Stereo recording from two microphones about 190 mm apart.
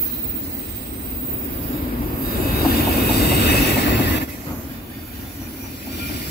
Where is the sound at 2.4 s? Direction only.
55° left (ahead or behind).